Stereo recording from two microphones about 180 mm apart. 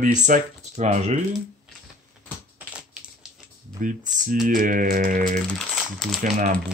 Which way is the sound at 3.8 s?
45° right (ahead or behind).